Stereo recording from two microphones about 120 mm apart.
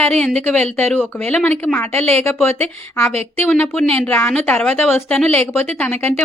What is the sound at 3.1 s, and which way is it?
Speech, 60° right (ahead or behind).